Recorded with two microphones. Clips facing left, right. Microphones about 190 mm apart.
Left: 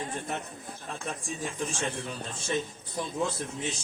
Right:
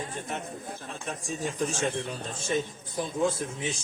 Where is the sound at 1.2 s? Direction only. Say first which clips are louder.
Right 7 dB; 40° right (ahead or behind).